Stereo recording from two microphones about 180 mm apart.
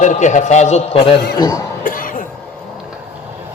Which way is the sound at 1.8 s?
50° left (ahead or behind).